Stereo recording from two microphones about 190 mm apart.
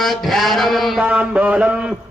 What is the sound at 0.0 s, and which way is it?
Mantra, centre (ahead or behind).